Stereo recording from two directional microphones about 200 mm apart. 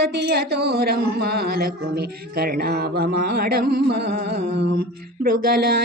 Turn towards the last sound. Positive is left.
turn(degrees=-50)  # may be behind; listen again after turning